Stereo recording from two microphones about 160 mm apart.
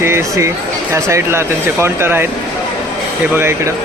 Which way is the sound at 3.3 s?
15° right (ahead or behind).